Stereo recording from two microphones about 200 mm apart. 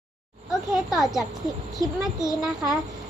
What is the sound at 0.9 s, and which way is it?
Speech, centre (ahead or behind).